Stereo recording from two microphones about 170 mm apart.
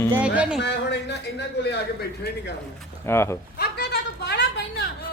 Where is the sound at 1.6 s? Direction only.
80° left.